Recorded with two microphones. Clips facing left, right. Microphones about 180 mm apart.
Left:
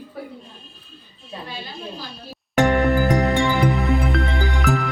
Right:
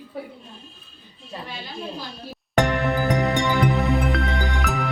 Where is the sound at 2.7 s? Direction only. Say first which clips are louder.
Left 4 dB; centre (ahead or behind).